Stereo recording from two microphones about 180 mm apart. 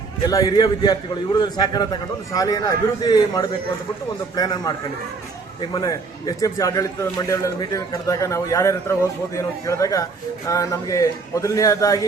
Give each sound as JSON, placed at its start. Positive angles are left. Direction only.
{"t": 0.2, "sound": "a man's voice", "side_deg": 20}